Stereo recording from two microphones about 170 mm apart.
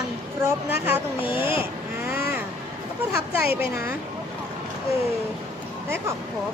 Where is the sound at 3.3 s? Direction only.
10° right (ahead or behind).